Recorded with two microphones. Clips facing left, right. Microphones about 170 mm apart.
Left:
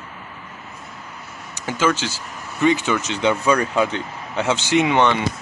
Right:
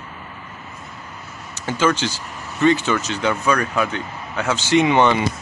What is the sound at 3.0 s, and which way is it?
Speech, 20° left (ahead or behind).